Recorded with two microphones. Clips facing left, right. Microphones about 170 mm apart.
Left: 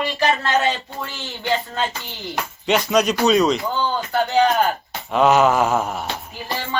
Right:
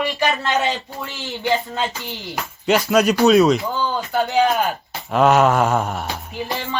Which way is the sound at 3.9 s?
15° right (ahead or behind).